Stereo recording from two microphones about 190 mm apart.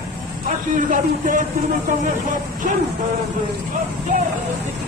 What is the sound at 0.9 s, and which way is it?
Speech, 45° right (ahead or behind).